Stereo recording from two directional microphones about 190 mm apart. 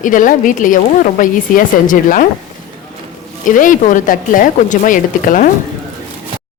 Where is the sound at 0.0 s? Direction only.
45° left (ahead or behind).